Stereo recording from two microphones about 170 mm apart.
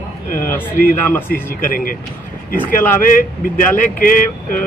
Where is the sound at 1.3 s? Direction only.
55° left (ahead or behind).